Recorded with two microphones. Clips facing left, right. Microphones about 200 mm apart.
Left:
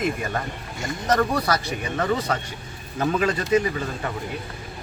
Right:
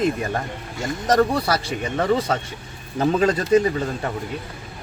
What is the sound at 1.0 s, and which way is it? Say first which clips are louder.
Speech: right 3 dB; 30° right (ahead or behind).